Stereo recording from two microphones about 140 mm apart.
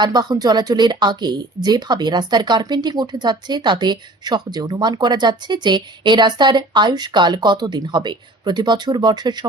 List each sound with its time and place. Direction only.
0.0 s speech: 30° right (ahead or behind)